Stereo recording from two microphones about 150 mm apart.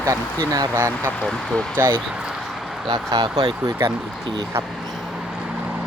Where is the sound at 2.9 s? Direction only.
25° right (ahead or behind).